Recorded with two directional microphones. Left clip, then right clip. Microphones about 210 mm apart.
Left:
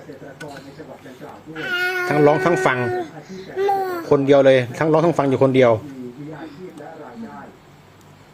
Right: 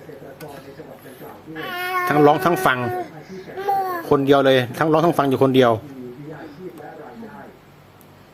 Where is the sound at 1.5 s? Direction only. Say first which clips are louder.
Left 3 dB; 15° right (ahead or behind).